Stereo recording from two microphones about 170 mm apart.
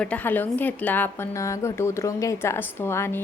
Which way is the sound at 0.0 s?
10° left (ahead or behind).